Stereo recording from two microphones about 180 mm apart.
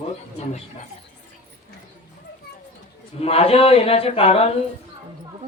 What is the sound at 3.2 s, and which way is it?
Speech, 35° left (ahead or behind).